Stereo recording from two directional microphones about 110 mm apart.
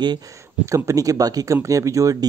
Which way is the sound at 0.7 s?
30° right (ahead or behind).